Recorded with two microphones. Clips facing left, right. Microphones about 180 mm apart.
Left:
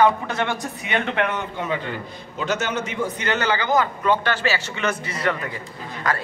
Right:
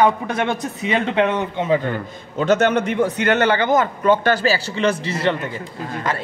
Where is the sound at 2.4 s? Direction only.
55° right (ahead or behind).